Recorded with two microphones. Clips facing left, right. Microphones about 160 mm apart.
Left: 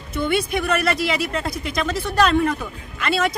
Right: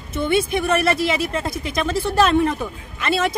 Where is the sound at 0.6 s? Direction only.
25° right (ahead or behind).